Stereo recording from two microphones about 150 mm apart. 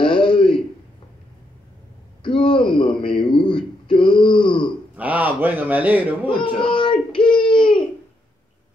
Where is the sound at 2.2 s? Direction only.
35° left (ahead or behind).